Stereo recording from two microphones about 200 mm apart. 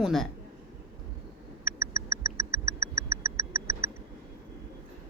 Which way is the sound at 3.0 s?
15° right (ahead or behind).